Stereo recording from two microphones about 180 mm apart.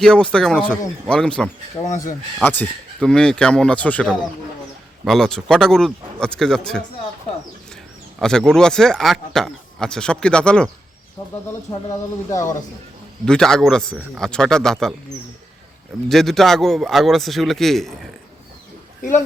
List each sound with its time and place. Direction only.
0.0 s speech: 5° left (ahead or behind)
1.8 s speech: 20° left (ahead or behind)
2.4 s speech: 10° left (ahead or behind)
8.2 s speech: 5° left (ahead or behind)
11.9 s speech: 20° left (ahead or behind)
13.2 s speech: 5° left (ahead or behind)
16.0 s speech: centre (ahead or behind)